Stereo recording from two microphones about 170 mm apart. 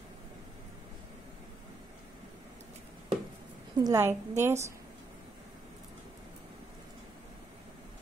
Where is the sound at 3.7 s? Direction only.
20° right (ahead or behind).